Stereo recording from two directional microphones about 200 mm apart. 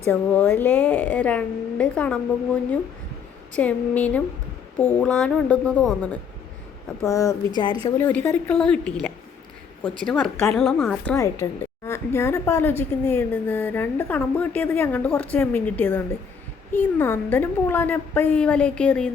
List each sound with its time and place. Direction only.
0.1 s a woman's voice: 5° left (ahead or behind)
7.0 s a woman's voice: 15° left (ahead or behind)
7.9 s a woman's voice: 10° left (ahead or behind)